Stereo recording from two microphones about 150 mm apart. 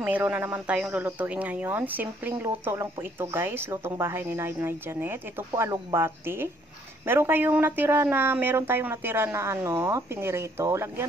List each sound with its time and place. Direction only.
0.0 s speech: 10° right (ahead or behind)